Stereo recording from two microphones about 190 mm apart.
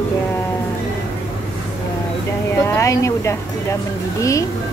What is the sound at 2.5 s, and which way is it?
Speech, 15° left (ahead or behind).